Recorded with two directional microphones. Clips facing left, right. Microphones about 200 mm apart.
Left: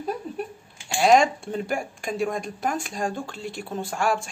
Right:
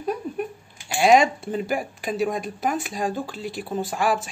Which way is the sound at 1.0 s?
5° right (ahead or behind).